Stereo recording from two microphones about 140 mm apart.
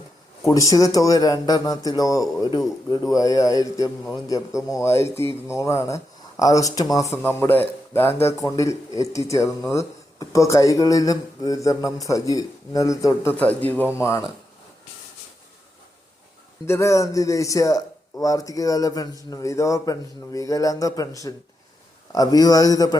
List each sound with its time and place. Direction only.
0.4 s speech: 25° left (ahead or behind)
7.2 s speech: 15° left (ahead or behind)
13.3 s speech: 10° left (ahead or behind)
16.6 s speech: 20° left (ahead or behind)
22.1 s speech: 25° left (ahead or behind)